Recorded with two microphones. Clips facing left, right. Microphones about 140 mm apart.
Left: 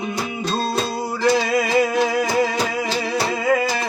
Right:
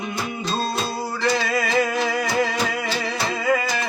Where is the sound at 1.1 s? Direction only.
15° left (ahead or behind).